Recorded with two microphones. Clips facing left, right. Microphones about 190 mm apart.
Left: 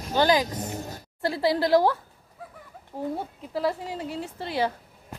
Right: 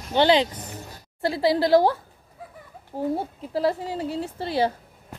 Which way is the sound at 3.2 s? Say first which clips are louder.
Right 3 dB; 30° right (ahead or behind).